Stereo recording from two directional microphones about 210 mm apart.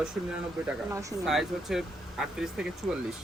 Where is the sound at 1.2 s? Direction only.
Centre (ahead or behind).